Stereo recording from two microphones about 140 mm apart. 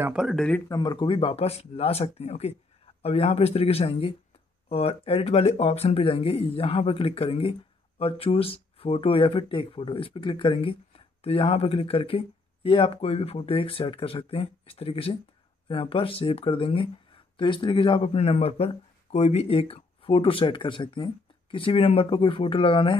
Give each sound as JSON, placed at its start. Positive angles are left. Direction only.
{"t": 0.1, "sound": "speech", "side_deg": -5}
{"t": 0.7, "sound": "speech", "side_deg": 30}